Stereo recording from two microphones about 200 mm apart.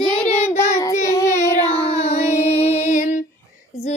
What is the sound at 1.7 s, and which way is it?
Child singing, 30° left (ahead or behind).